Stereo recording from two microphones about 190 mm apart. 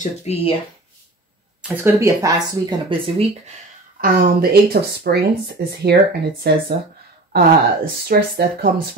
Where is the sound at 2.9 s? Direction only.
25° right (ahead or behind).